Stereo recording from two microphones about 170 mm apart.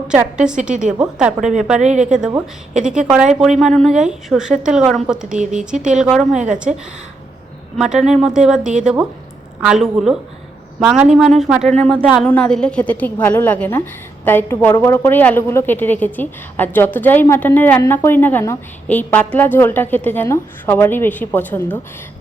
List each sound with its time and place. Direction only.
0.1 s a woman's voice: 5° right (ahead or behind)
0.7 s a woman's voice: 45° right (ahead or behind)
0.9 s a woman's voice: 5° right (ahead or behind)
1.8 s a woman's voice: 45° right (ahead or behind)
2.7 s a woman's voice: 5° right (ahead or behind)
6.4 s a woman's voice: 45° right (ahead or behind)
7.8 s a woman's voice: 5° right (ahead or behind)